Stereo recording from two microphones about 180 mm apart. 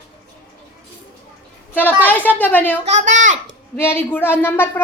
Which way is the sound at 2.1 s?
10° left (ahead or behind).